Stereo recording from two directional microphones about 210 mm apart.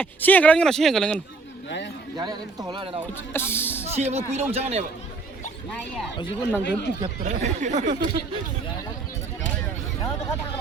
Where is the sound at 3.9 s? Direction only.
30° right (ahead or behind).